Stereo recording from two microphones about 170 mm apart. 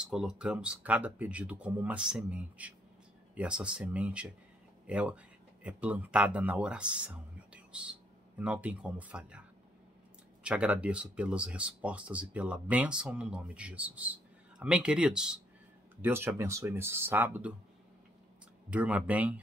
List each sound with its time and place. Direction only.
0.0 s speech: 5° right (ahead or behind)
10.4 s speech: 5° right (ahead or behind)
18.7 s speech: 10° right (ahead or behind)